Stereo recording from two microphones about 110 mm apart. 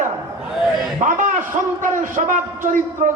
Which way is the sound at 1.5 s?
90° right.